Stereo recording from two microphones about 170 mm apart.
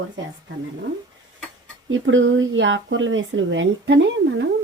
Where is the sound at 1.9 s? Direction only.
90° right.